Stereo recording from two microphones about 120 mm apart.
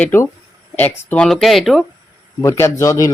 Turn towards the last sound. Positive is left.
turn(degrees=25)  # may be behind; listen again after turning